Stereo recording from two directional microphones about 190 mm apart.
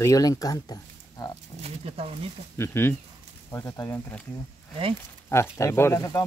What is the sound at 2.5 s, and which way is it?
Speech, 15° left (ahead or behind).